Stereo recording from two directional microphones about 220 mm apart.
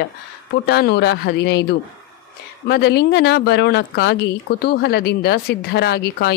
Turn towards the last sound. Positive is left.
turn(degrees=45)  # may be behind; listen again after turning